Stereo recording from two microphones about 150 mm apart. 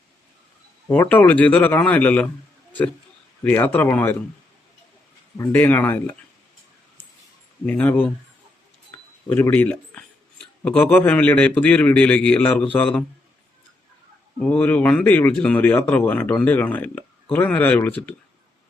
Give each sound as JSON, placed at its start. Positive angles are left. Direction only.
{"t": 0.9, "sound": "speech", "side_deg": 10}
{"t": 3.4, "sound": "speech", "side_deg": 15}
{"t": 5.5, "sound": "speech", "side_deg": 10}
{"t": 7.7, "sound": "speech", "side_deg": 10}
{"t": 14.3, "sound": "speech", "side_deg": 10}